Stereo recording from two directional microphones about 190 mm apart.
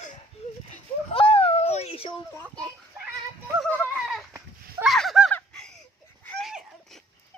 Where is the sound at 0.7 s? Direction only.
30° left (ahead or behind).